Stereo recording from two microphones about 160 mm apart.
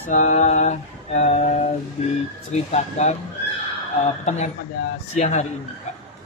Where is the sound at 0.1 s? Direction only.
50° left (ahead or behind).